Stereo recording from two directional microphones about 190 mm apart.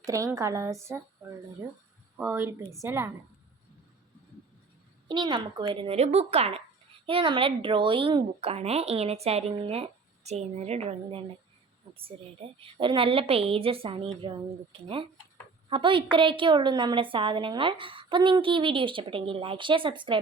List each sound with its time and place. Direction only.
0.0 s a woman's voice: 15° right (ahead or behind)
2.1 s a woman's voice: 10° right (ahead or behind)
5.0 s a woman's voice: 25° right (ahead or behind)